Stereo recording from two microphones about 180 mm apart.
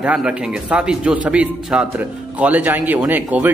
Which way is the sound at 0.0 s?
5° right (ahead or behind).